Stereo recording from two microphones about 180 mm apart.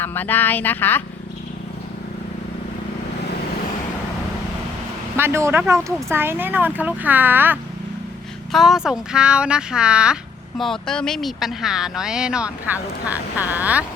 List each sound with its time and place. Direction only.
0.0 s speech: 10° left (ahead or behind)
5.1 s speech: 15° right (ahead or behind)